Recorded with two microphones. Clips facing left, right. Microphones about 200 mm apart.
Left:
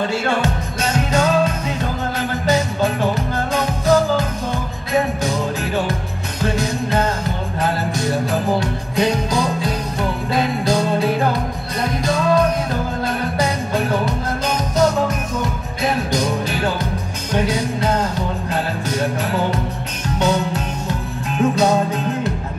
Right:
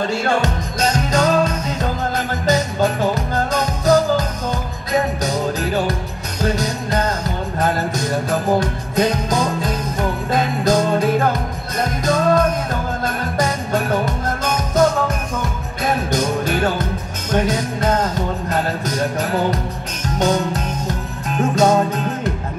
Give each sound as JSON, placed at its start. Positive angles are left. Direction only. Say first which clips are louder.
{"t": 0.4, "sound": "music", "louder": "right 1 dB", "side_deg": -40}
{"t": 20.2, "sound": "music", "louder": "right 1 dB", "side_deg": -45}